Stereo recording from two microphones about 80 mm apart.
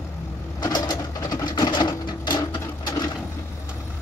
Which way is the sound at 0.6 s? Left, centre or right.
Left.